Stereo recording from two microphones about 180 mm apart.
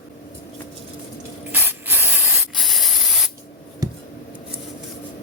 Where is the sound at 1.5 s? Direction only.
10° right (ahead or behind).